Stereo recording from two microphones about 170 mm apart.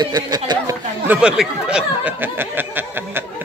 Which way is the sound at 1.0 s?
10° right (ahead or behind).